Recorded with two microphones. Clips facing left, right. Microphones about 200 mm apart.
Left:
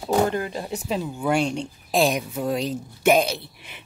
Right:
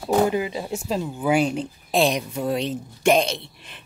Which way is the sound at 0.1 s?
5° right (ahead or behind).